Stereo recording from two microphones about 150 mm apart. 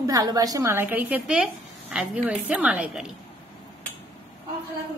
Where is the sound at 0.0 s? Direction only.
25° right (ahead or behind); by 3.1 s 5° right (ahead or behind).